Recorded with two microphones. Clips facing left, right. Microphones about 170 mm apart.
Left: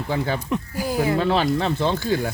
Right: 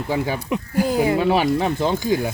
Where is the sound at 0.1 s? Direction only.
10° right (ahead or behind).